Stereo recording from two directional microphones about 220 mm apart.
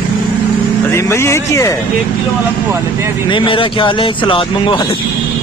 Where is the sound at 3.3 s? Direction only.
25° left (ahead or behind).